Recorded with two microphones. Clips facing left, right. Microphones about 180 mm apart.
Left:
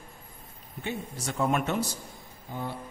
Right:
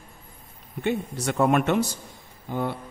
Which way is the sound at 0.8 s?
65° right (ahead or behind).